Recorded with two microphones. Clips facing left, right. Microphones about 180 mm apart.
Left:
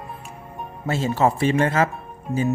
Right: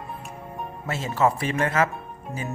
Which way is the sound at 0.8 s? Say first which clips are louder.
Left 3 dB; 30° left (ahead or behind).